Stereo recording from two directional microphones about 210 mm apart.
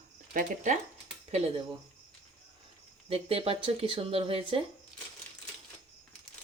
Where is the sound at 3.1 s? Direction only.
25° right (ahead or behind).